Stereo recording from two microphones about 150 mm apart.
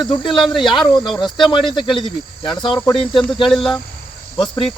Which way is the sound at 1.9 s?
30° left (ahead or behind).